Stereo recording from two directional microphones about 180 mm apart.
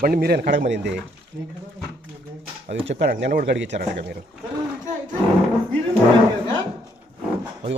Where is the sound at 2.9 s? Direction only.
75° right (ahead or behind).